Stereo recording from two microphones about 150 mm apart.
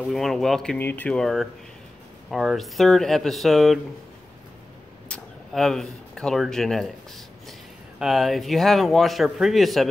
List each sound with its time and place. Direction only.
0.1 s a man's voice: centre (ahead or behind)
0.7 s a man's voice: 15° left (ahead or behind)
5.1 s a sound: centre (ahead or behind)
8.0 s a man's voice: centre (ahead or behind)